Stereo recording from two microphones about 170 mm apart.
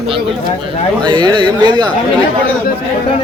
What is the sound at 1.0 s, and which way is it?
Speech, 25° right (ahead or behind).